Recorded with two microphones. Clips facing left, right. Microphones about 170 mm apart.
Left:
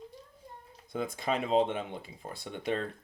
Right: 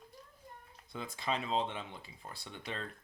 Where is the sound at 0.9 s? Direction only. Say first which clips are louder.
Left 6 dB; 50° left (ahead or behind).